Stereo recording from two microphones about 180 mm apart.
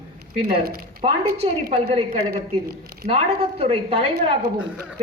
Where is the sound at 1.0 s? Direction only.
35° right (ahead or behind).